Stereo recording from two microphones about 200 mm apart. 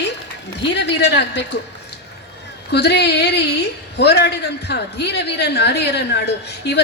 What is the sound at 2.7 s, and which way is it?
A woman's voice, 55° left (ahead or behind).